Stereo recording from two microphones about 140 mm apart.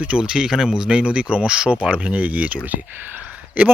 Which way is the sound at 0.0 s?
5° right (ahead or behind).